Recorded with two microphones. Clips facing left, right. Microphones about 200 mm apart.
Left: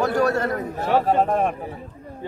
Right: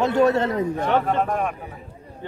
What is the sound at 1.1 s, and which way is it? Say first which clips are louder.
Speech: left 3 dB; 35° left (ahead or behind).